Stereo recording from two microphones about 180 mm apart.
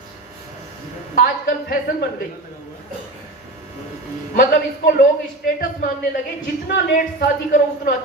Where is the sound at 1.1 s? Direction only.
50° left (ahead or behind).